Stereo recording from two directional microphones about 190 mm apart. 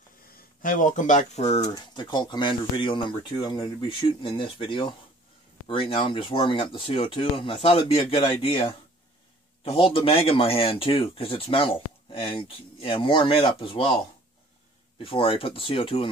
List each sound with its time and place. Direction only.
0.3 s speech: 45° left (ahead or behind)
1.6 s speech: 20° left (ahead or behind)